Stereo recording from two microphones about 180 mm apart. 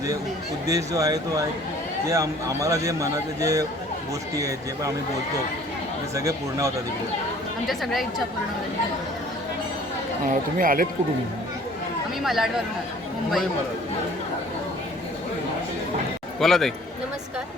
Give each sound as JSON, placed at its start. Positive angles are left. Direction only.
{"t": 0.7, "sound": "a man's voice", "side_deg": -20}
{"t": 6.1, "sound": "speech", "side_deg": -15}
{"t": 7.7, "sound": "a woman's voice", "side_deg": 0}
{"t": 10.2, "sound": "speech", "side_deg": -50}
{"t": 12.2, "sound": "a woman's voice", "side_deg": 0}
{"t": 16.4, "sound": "a woman's voice", "side_deg": 0}